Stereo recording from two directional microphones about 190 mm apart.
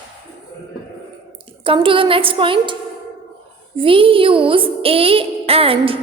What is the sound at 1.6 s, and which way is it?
Music, 25° right (ahead or behind).